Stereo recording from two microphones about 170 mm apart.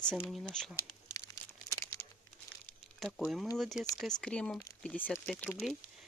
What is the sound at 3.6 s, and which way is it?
Speech, centre (ahead or behind).